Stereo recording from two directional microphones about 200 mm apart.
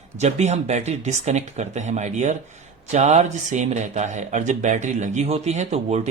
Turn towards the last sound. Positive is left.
turn(degrees=-35)  # may be behind; listen again after turning